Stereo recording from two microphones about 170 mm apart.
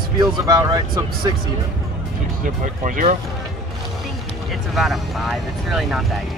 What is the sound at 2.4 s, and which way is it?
Speech, 50° right (ahead or behind).